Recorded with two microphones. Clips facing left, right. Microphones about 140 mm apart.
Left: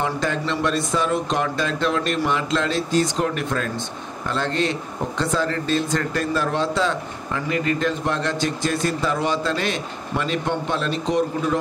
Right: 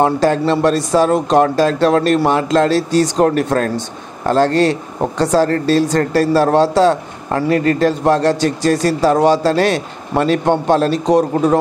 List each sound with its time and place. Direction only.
0.0 s a man's voice: 40° right (ahead or behind)